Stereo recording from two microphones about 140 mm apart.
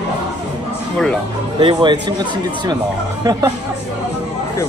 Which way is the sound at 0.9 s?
5° left (ahead or behind).